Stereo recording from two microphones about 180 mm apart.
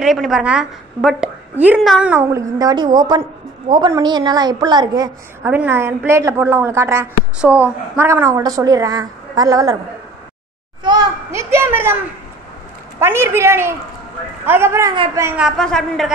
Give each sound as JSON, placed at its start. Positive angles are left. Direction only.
{"t": 0.0, "sound": "a woman's voice", "side_deg": 0}
{"t": 10.8, "sound": "a sound", "side_deg": -25}
{"t": 13.0, "sound": "a woman's voice", "side_deg": -15}
{"t": 15.4, "sound": "a woman's voice", "side_deg": 5}